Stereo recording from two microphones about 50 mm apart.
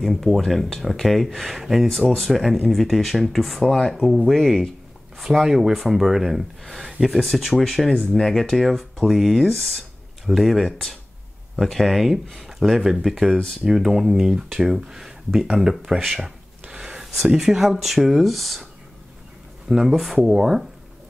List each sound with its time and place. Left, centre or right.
0.0 s speech: centre
6.9 s a sound: centre
7.3 s speech: centre
16.0 s speech: centre
16.6 s a sound: centre
17.3 s speech: centre
19.7 s speech: centre